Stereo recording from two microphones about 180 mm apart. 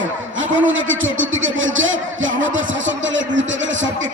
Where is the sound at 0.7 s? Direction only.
90° right.